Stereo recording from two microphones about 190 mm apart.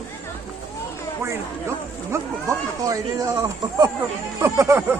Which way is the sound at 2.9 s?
15° right (ahead or behind).